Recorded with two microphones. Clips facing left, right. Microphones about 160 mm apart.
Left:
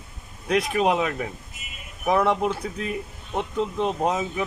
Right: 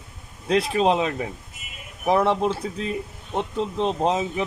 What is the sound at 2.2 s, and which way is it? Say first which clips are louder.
Speech: right 1 dB; 30° right (ahead or behind).